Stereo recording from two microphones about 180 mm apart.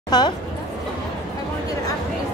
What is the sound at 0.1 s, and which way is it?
Speech, 20° left (ahead or behind).